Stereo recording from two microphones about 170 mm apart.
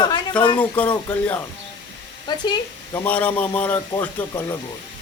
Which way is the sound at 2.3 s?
25° left (ahead or behind).